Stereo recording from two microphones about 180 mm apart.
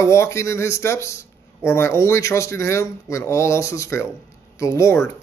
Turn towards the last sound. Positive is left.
turn(degrees=15)  # may be behind; listen again after turning